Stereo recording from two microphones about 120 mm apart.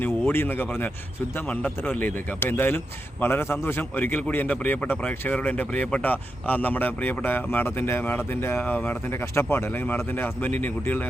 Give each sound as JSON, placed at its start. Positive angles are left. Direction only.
{"t": 0.0, "sound": "a man's voice", "side_deg": 15}